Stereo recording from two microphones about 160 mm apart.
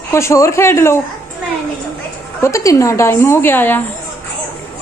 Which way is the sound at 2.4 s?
20° left (ahead or behind).